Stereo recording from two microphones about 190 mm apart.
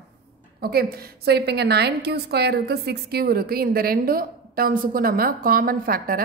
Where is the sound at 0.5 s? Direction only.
55° right (ahead or behind).